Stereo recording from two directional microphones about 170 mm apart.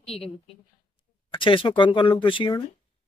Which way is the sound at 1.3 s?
30° left (ahead or behind).